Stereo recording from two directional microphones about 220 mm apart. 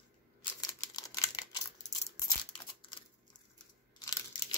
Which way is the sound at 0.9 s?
15° left (ahead or behind).